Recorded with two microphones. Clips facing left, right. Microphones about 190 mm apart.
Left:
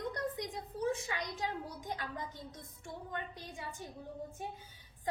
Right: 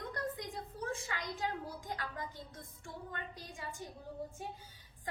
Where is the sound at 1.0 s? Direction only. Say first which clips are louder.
Left 1 dB; 20° left (ahead or behind).